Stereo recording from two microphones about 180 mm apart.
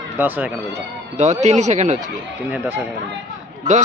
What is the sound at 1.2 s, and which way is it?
Speech, 40° right (ahead or behind).